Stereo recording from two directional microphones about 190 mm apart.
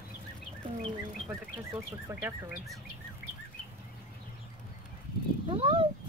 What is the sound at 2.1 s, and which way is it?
Speech, 10° right (ahead or behind).